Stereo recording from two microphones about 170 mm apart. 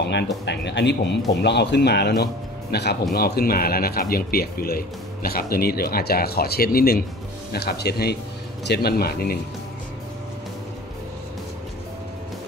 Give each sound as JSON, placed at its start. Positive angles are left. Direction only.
{"t": 0.0, "sound": "music", "side_deg": 90}
{"t": 0.5, "sound": "speech", "side_deg": 90}
{"t": 7.5, "sound": "speech", "side_deg": 70}